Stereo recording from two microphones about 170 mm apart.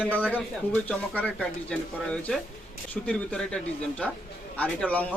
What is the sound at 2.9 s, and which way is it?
A man's voice, 5° left (ahead or behind).